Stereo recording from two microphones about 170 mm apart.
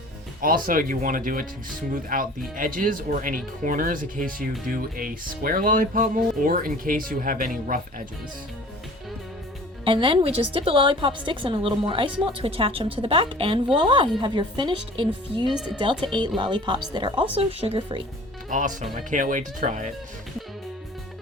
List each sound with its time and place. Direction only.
0.4 s speech: 55° right (ahead or behind)
9.8 s a woman's voice: 30° right (ahead or behind)
18.5 s speech: 50° right (ahead or behind)